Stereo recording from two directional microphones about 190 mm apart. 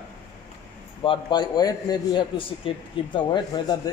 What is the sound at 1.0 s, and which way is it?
A man's voice, 25° left (ahead or behind).